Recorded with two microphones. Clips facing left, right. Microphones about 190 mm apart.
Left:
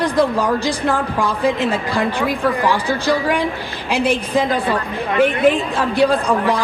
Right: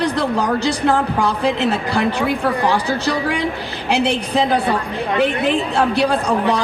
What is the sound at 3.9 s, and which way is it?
Music, 70° right (ahead or behind).